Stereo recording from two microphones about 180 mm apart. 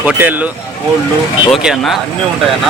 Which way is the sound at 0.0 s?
10° right (ahead or behind).